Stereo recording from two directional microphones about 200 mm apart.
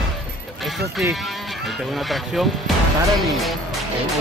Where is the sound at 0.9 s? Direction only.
Centre (ahead or behind).